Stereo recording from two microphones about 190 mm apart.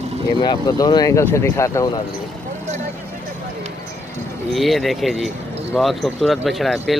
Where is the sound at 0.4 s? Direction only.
20° left (ahead or behind).